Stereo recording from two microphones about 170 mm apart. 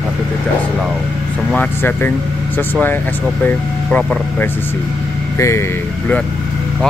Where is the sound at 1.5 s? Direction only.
10° left (ahead or behind).